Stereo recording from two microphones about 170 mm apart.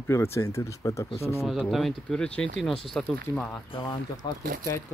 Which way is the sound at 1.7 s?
Centre (ahead or behind).